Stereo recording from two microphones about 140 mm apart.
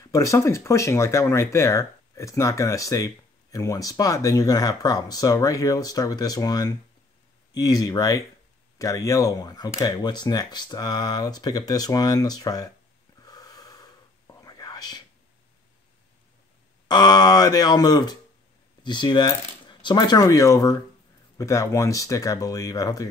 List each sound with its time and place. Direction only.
0.0 s speech: 20° left (ahead or behind)
13.2 s whispering: 30° left (ahead or behind)
16.8 s speech: 30° left (ahead or behind)